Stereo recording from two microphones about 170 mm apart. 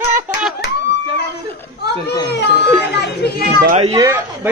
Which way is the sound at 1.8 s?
80° left.